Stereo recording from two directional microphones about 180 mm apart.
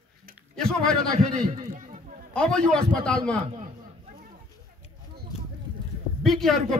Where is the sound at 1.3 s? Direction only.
50° right (ahead or behind).